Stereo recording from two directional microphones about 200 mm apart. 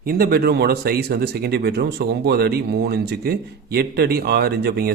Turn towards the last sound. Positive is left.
turn(degrees=-50)  # may be behind; listen again after turning